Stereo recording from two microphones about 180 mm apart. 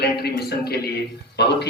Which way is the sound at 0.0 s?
60° left (ahead or behind).